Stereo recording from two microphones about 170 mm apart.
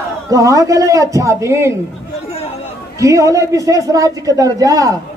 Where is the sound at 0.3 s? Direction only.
20° right (ahead or behind).